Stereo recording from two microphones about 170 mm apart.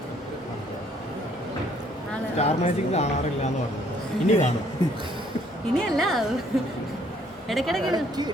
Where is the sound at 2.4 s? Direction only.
40° left (ahead or behind).